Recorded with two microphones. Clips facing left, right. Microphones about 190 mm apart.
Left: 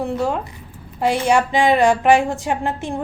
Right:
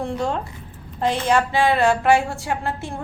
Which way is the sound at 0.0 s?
5° left (ahead or behind).